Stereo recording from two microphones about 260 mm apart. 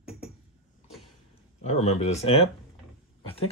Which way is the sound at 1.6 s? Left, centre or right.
Left.